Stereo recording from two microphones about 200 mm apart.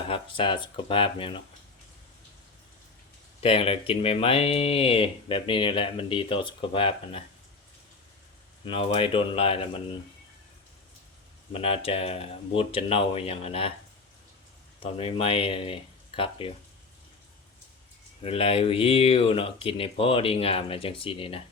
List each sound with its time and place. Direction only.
0.1 s speech: 25° left (ahead or behind)
3.4 s speech: 30° left (ahead or behind)
8.6 s speech: 30° left (ahead or behind)
11.5 s speech: 30° left (ahead or behind)
14.8 s speech: 25° left (ahead or behind)
18.2 s speech: 30° left (ahead or behind)